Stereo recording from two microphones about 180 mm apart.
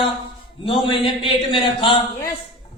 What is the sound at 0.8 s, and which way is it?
Speech, 30° left (ahead or behind).